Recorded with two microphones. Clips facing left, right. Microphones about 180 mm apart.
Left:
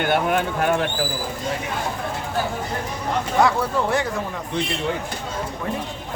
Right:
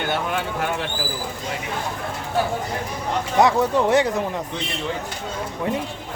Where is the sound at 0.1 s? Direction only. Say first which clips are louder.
Left 4 dB; 55° left (ahead or behind).